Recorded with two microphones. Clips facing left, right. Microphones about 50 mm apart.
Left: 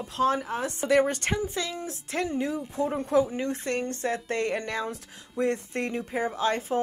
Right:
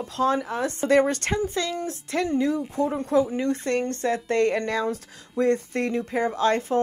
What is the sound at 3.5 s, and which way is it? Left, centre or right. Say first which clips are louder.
Speech: right 5 dB; right.